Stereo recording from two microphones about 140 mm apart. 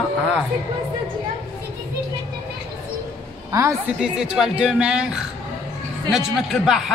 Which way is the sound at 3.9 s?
5° right (ahead or behind).